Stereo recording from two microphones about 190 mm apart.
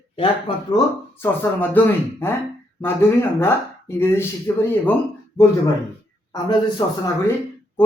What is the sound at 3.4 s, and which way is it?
Speech, 15° left (ahead or behind).